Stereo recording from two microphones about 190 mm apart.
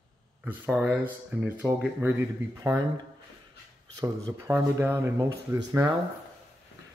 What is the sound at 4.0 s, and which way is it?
Speech, 15° right (ahead or behind).